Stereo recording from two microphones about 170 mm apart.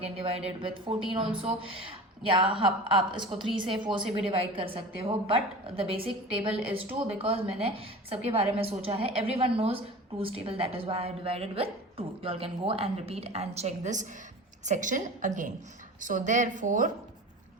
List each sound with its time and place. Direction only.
0.0 s a woman's voice: 35° right (ahead or behind)